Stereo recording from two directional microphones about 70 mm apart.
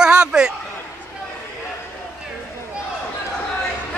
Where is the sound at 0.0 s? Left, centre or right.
Centre.